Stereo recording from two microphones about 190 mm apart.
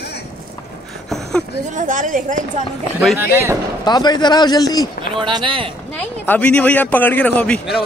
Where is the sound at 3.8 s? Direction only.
20° left (ahead or behind).